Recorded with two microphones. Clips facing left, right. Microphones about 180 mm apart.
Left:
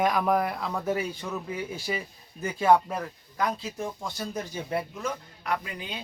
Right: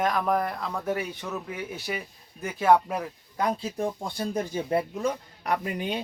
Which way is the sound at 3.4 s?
30° right (ahead or behind).